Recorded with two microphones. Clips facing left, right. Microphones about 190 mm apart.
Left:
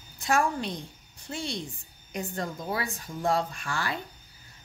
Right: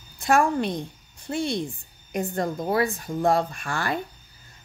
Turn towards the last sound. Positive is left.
turn(degrees=-55)  # may be behind; listen again after turning